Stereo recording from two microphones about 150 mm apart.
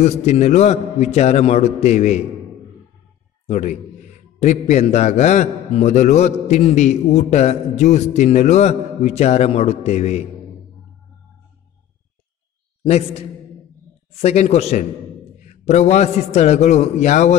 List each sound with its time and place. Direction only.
0.0 s a man's voice: 50° left (ahead or behind)
3.4 s a man's voice: 45° left (ahead or behind)
12.8 s a man's voice: 45° left (ahead or behind)
14.2 s a man's voice: 45° left (ahead or behind)